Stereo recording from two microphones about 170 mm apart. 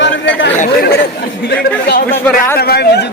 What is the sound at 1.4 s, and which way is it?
A man's voice, 65° left (ahead or behind).